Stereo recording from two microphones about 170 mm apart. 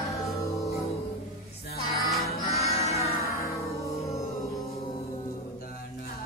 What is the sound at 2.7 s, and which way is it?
Music, 40° left (ahead or behind).